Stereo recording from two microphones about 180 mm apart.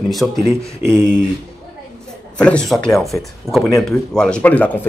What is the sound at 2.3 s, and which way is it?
Speech, 5° left (ahead or behind).